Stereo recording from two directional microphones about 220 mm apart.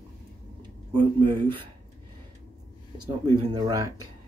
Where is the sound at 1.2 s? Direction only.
20° right (ahead or behind).